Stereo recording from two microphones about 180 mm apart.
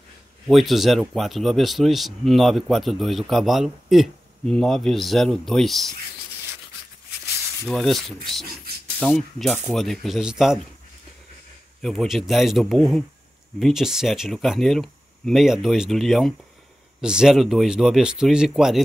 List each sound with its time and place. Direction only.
0.5 s speech: centre (ahead or behind)
7.6 s speech: centre (ahead or behind)
11.8 s speech: centre (ahead or behind)